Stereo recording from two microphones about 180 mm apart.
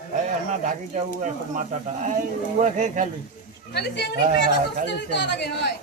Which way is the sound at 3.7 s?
65° left (ahead or behind).